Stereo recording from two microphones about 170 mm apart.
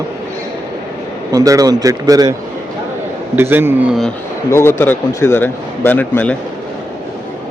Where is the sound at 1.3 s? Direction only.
20° right (ahead or behind).